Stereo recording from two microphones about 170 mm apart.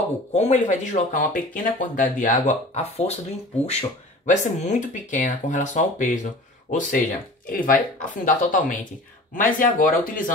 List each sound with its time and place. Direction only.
0.3 s speech: 40° left (ahead or behind)
4.3 s speech: 45° left (ahead or behind)